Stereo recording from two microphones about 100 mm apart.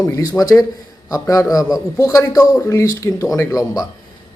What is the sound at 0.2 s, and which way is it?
A man's voice, 40° left (ahead or behind).